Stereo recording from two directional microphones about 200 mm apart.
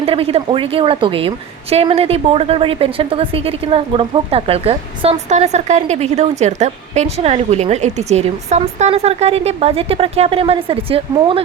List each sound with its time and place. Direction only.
0.0 s a woman's voice: 30° right (ahead or behind)